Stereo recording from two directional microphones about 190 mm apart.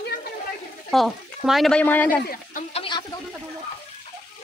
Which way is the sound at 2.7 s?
25° left (ahead or behind).